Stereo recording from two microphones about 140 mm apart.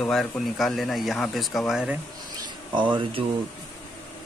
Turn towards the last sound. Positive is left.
turn(degrees=-35)  # may be behind; listen again after turning